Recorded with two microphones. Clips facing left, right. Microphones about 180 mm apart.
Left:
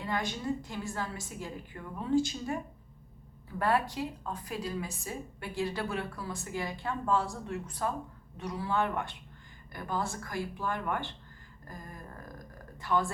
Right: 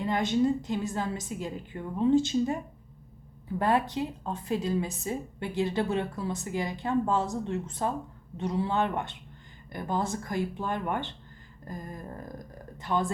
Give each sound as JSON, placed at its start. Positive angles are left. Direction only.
{"t": 0.0, "sound": "a woman's voice", "side_deg": -20}
{"t": 3.6, "sound": "a woman's voice", "side_deg": -20}